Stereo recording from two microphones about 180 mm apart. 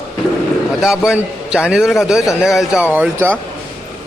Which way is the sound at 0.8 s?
5° right (ahead or behind).